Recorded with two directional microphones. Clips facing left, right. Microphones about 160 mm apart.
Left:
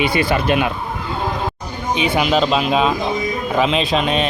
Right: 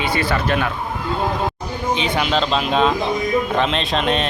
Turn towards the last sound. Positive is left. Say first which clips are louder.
# left 2 dB
turn(degrees=5)  # may be behind; listen again after turning